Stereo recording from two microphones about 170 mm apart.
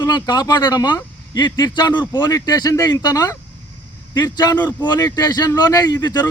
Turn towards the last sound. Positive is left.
turn(degrees=20)  # may be behind; listen again after turning